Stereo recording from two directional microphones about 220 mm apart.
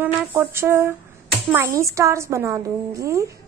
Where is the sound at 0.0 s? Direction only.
10° right (ahead or behind).